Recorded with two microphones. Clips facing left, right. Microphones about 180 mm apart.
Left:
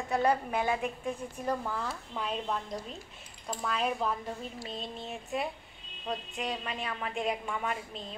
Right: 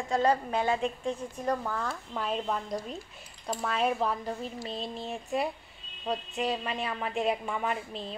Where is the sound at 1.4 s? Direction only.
5° left (ahead or behind).